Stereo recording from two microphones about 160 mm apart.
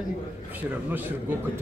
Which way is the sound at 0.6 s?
10° right (ahead or behind).